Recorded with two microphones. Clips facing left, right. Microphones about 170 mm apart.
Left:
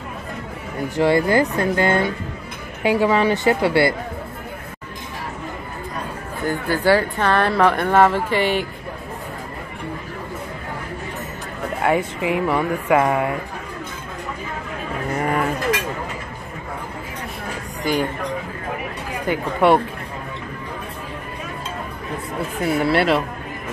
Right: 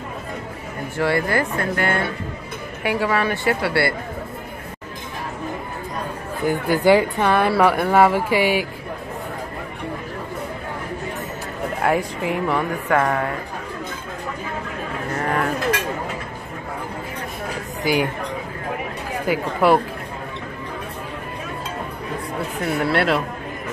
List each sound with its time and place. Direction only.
0.9 s speech: 20° left (ahead or behind)
6.4 s speech: 15° right (ahead or behind)
11.8 s speech: centre (ahead or behind)
19.2 s speech: 5° right (ahead or behind)
22.6 s speech: centre (ahead or behind)